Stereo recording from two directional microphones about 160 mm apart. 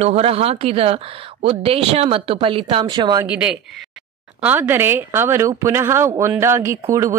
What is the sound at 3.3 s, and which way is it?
Speech, 10° right (ahead or behind).